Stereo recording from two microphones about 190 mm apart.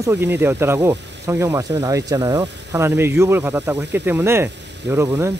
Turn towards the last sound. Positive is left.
turn(degrees=-15)  # may be behind; listen again after turning